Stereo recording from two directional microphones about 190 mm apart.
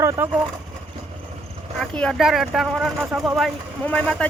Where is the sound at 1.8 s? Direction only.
5° left (ahead or behind).